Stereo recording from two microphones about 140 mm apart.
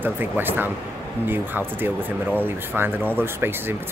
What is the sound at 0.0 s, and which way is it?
Speech, 15° right (ahead or behind).